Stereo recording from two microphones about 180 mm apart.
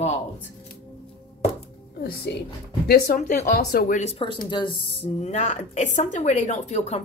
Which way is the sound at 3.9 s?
35° left (ahead or behind).